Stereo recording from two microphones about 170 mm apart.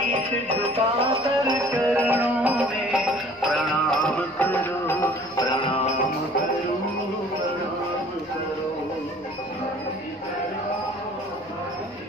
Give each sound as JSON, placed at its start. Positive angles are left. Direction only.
{"t": 0.5, "sound": "music", "side_deg": -40}
{"t": 1.4, "sound": "music", "side_deg": -20}
{"t": 5.5, "sound": "music", "side_deg": 30}